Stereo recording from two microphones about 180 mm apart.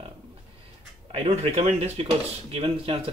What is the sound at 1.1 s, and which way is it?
Speech, 35° right (ahead or behind).